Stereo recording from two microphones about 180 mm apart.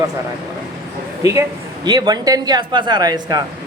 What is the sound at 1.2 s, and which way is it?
Speech, 15° right (ahead or behind).